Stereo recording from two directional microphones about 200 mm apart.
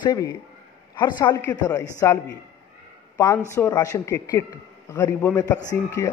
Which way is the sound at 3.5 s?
15° left (ahead or behind).